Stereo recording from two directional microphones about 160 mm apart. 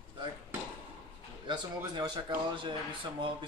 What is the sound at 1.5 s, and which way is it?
Speech, 25° right (ahead or behind).